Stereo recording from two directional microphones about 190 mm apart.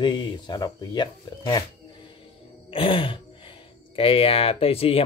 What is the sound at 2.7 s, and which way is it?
Speech, 30° left (ahead or behind).